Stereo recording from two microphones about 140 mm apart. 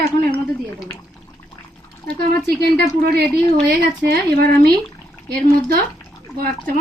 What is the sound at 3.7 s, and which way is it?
A woman's voice, 90° right.